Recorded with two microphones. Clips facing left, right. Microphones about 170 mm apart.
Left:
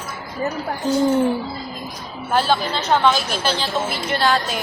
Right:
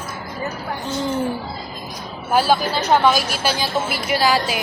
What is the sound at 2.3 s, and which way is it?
A woman's voice, 10° right (ahead or behind).